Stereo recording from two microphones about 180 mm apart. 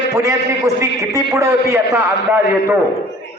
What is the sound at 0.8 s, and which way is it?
A man's voice, 15° right (ahead or behind).